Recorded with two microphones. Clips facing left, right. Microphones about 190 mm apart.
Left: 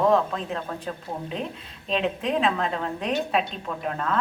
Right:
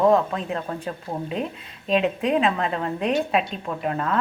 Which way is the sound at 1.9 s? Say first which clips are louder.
Right 4 dB; 5° right (ahead or behind).